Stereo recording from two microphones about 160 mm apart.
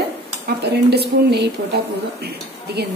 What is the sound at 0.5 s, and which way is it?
A woman's voice, 90° right.